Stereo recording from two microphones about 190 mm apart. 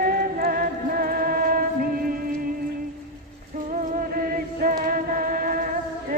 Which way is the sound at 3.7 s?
40° right (ahead or behind).